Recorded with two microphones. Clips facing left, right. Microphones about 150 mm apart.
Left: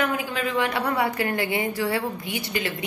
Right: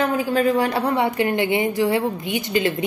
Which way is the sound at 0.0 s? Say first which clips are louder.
Right 7 dB; 35° right (ahead or behind).